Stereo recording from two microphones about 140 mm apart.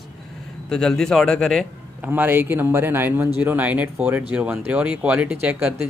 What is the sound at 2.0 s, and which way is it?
Speech, 15° right (ahead or behind).